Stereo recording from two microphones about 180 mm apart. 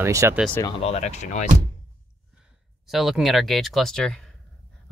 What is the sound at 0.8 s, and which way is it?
Speech, 35° left (ahead or behind).